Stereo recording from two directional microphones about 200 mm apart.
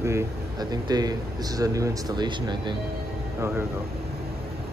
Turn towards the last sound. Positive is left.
turn(degrees=-10)  # may be behind; listen again after turning